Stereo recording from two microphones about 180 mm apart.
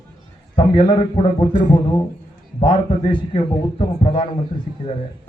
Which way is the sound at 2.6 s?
25° left (ahead or behind).